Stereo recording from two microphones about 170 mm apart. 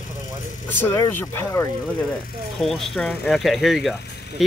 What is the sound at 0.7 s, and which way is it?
Speech, 15° left (ahead or behind).